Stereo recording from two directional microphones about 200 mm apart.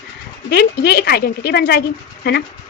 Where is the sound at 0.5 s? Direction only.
55° left (ahead or behind).